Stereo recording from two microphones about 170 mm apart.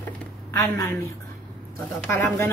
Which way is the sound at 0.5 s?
15° left (ahead or behind).